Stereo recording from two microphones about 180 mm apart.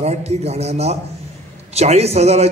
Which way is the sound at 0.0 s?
35° right (ahead or behind).